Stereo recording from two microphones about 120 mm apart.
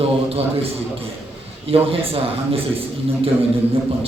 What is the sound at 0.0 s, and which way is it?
A man's voice, 55° right (ahead or behind).